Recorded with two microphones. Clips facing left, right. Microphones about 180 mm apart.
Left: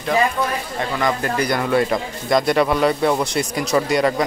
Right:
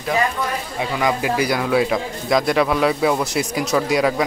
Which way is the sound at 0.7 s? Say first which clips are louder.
Right 1 dB; 10° right (ahead or behind).